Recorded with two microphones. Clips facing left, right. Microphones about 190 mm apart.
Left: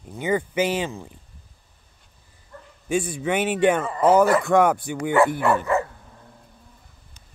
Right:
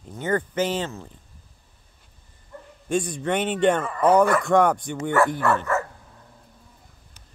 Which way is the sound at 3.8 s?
25° left (ahead or behind).